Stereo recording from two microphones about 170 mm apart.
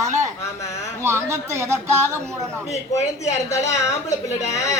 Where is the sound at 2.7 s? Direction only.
40° left (ahead or behind).